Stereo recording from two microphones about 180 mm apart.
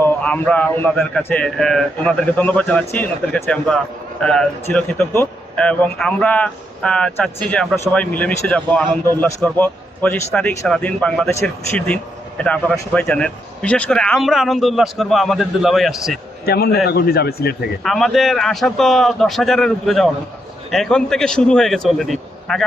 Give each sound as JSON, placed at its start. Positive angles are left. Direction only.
{"t": 0.0, "sound": "a man's voice", "side_deg": 10}
{"t": 16.5, "sound": "speech", "side_deg": 60}
{"t": 17.8, "sound": "speech", "side_deg": 0}